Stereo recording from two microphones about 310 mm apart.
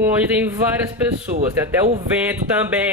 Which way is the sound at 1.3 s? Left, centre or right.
Right.